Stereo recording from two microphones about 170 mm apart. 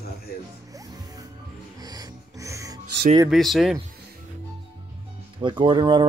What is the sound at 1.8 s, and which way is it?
Music, 20° right (ahead or behind).